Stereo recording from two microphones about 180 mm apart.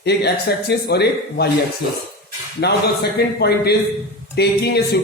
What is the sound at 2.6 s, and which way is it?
A man's voice, 65° left (ahead or behind).